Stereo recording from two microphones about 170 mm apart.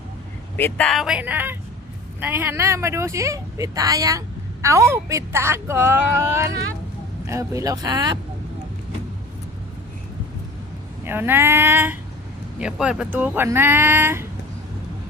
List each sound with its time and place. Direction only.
0.5 s speech: 10° left (ahead or behind); by 8.2 s 25° right (ahead or behind)
11.0 s speech: 10° right (ahead or behind)